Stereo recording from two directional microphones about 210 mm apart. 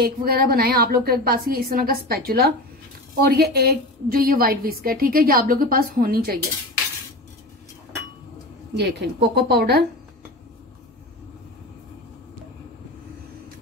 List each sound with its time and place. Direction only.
0.0 s a woman's voice: 45° right (ahead or behind)
8.7 s a woman's voice: 55° right (ahead or behind)